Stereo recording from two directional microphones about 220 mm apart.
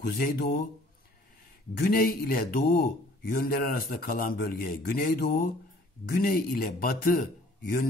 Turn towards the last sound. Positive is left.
turn(degrees=40)  # may be behind; listen again after turning